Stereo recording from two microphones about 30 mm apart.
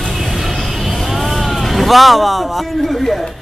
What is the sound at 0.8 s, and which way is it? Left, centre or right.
Vehicle, centre.